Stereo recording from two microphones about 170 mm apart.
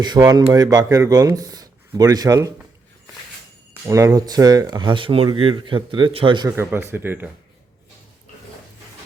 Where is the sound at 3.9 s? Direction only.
20° right (ahead or behind).